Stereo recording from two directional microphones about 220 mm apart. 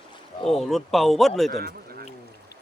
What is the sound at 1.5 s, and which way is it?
Speech, 40° right (ahead or behind).